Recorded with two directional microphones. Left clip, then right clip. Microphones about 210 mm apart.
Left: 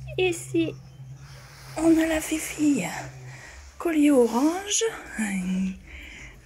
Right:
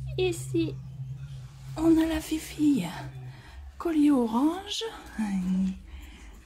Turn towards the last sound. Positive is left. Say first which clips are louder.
# left 2 dB
turn(degrees=0)  # may be behind; listen again after turning